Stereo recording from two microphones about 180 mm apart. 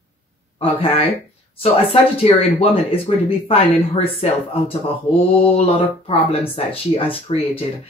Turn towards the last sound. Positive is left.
turn(degrees=30)  # may be behind; listen again after turning